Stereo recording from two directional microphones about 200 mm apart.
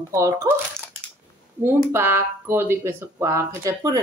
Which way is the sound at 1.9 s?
10° right (ahead or behind).